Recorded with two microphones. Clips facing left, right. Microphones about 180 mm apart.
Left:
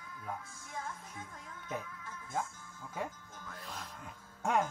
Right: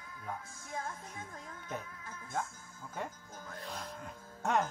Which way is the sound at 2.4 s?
5° left (ahead or behind).